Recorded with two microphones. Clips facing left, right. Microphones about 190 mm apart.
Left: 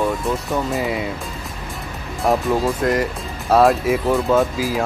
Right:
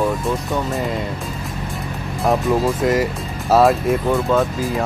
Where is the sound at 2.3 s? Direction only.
Centre (ahead or behind).